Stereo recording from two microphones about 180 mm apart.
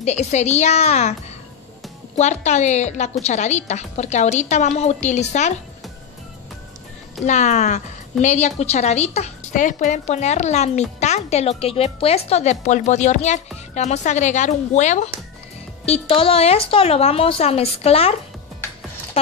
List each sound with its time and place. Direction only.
0.0 s a woman's voice: 40° left (ahead or behind)
2.1 s a woman's voice: 40° left (ahead or behind)
7.2 s a woman's voice: 40° left (ahead or behind)